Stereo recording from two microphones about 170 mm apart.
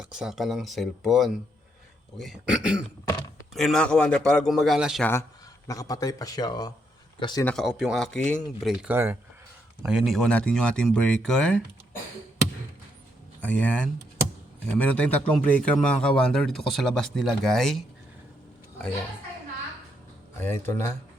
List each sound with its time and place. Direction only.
0.0 s a man's voice: 5° right (ahead or behind)
5.6 s speech: 20° left (ahead or behind)
7.4 s a man's voice: centre (ahead or behind)
8.7 s a man's voice: 10° right (ahead or behind)
13.4 s a man's voice: 10° left (ahead or behind)
20.4 s speech: 15° left (ahead or behind)